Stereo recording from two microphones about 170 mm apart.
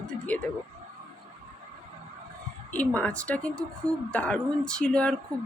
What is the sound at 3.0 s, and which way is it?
Speech, 5° left (ahead or behind).